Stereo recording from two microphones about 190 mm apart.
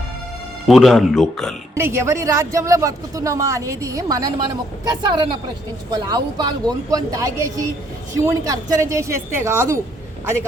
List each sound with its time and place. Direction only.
0.7 s speech: centre (ahead or behind)
1.7 s a woman's voice: 15° right (ahead or behind)